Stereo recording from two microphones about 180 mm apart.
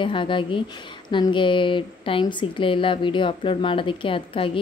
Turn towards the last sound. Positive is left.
turn(degrees=30)  # may be behind; listen again after turning